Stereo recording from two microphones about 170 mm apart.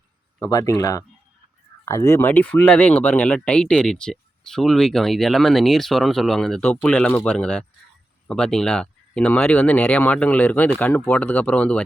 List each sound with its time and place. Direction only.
0.3 s speech: 20° left (ahead or behind)